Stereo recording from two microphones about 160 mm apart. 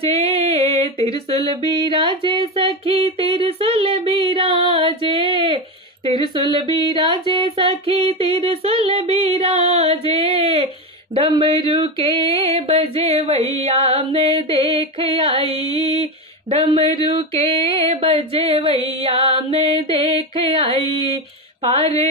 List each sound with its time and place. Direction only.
0.0 s music: 40° right (ahead or behind)
21.6 s music: 40° right (ahead or behind)